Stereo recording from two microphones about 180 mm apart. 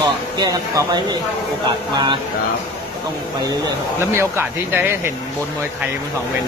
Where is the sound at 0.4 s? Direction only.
20° right (ahead or behind).